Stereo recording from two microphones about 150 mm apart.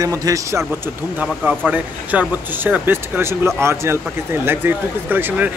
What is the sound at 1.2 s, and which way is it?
Speech, 10° right (ahead or behind).